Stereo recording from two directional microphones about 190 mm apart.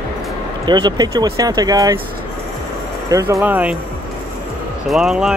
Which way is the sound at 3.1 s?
15° right (ahead or behind).